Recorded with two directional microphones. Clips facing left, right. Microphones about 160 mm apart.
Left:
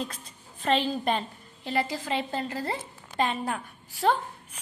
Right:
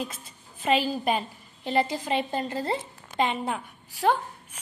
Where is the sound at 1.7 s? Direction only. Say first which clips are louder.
Right 3 dB; 20° right (ahead or behind).